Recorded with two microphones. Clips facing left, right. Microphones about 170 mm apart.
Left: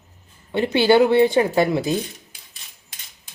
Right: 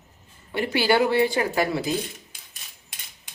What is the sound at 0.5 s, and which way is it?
Speech, 20° left (ahead or behind).